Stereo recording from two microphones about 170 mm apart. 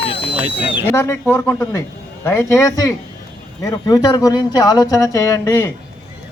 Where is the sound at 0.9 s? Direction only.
15° left (ahead or behind).